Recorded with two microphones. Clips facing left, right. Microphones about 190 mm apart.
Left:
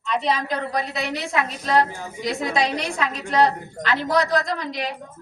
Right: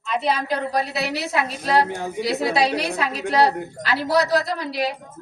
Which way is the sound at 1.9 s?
70° right (ahead or behind).